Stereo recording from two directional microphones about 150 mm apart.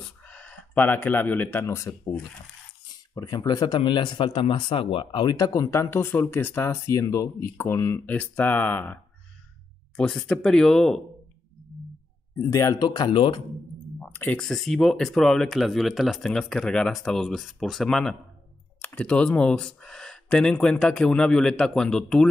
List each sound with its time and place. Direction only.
0.2 s speech: 10° left (ahead or behind)
3.2 s speech: 25° left (ahead or behind); by 11.0 s 5° left (ahead or behind)
12.4 s speech: 20° left (ahead or behind)
14.0 s a sound: 10° left (ahead or behind)
14.4 s speech: centre (ahead or behind)